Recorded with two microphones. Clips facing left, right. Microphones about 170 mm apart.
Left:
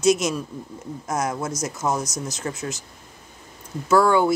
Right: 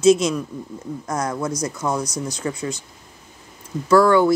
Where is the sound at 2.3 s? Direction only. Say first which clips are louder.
Right 3 dB; 5° left (ahead or behind).